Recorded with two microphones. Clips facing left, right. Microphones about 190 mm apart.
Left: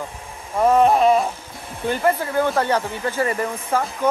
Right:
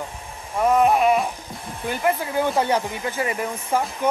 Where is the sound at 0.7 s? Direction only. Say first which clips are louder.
Left 2 dB; 30° left (ahead or behind).